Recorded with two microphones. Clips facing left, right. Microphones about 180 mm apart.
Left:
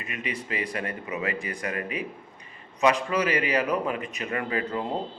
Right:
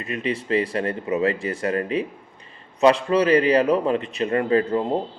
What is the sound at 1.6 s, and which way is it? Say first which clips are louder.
A man's voice: right 10 dB; 30° right (ahead or behind).